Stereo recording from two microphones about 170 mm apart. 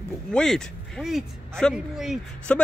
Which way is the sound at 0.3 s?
5° left (ahead or behind).